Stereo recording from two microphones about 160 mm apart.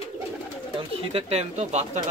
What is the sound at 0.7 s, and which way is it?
Speech, 40° right (ahead or behind).